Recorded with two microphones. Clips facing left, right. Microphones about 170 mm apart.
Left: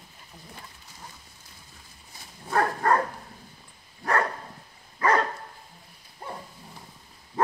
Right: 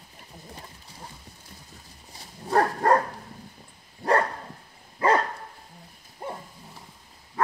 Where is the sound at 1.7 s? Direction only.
35° right (ahead or behind).